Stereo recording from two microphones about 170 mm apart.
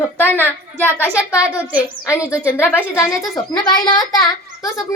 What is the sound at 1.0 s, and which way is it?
Speech, 10° right (ahead or behind).